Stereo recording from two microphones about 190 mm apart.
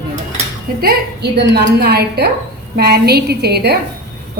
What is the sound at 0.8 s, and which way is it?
Speech, 60° right (ahead or behind).